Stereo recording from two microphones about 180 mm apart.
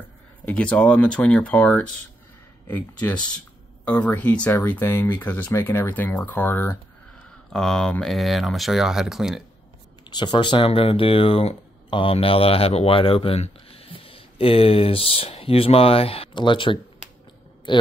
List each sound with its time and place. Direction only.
0.5 s speech: 5° left (ahead or behind)
10.0 s speech: 25° left (ahead or behind)